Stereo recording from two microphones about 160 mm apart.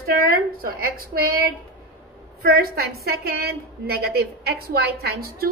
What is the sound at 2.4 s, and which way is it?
A woman's voice, 70° right (ahead or behind).